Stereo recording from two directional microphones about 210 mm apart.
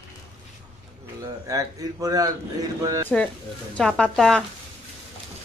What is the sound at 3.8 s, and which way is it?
Speech, 5° left (ahead or behind).